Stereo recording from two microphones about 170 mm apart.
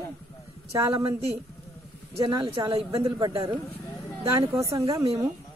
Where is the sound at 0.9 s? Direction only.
35° right (ahead or behind).